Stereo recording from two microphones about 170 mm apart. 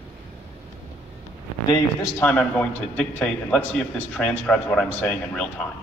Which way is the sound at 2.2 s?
10° left (ahead or behind).